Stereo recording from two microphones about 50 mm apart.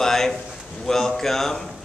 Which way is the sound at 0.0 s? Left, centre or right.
Centre.